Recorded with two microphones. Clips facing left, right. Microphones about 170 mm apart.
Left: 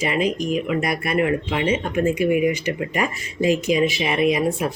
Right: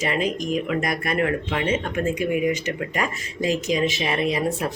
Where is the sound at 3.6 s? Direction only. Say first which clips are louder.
Left 3 dB; 40° right (ahead or behind).